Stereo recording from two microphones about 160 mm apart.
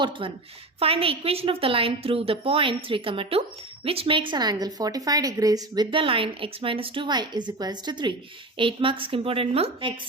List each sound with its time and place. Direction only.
0.0 s a woman's voice: 30° right (ahead or behind)